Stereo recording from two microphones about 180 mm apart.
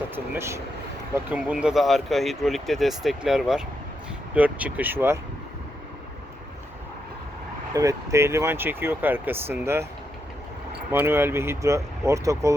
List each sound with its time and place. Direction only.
0.3 s speech: 15° right (ahead or behind)
7.7 s speech: 20° right (ahead or behind)
10.9 s speech: 15° right (ahead or behind)